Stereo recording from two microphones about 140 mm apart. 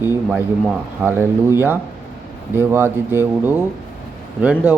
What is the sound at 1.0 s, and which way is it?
Speech, 15° right (ahead or behind).